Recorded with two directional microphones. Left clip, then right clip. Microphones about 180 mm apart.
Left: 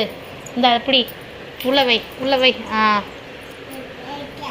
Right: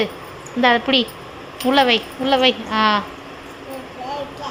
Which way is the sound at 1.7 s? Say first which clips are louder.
Right 1 dB; 15° right (ahead or behind).